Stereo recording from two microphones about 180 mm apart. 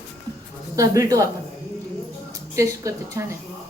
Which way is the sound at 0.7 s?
20° right (ahead or behind).